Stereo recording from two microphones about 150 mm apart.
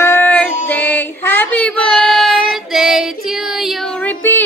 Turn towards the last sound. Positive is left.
turn(degrees=15)  # may be behind; listen again after turning